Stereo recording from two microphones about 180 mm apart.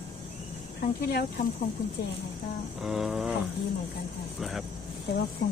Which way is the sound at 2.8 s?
Centre (ahead or behind).